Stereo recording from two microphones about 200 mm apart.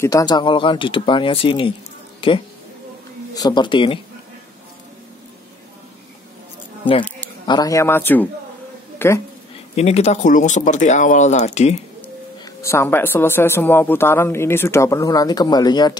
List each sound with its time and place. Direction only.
0.0 s a woman's voice: 20° left (ahead or behind)
7.4 s speech: 20° left (ahead or behind)
8.9 s a sound: 10° left (ahead or behind)
9.8 s speech: 35° left (ahead or behind)
12.6 s speech: 10° left (ahead or behind)